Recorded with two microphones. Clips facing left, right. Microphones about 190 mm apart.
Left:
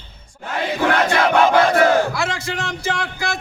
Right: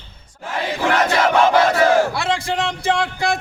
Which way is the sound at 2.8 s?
30° right (ahead or behind).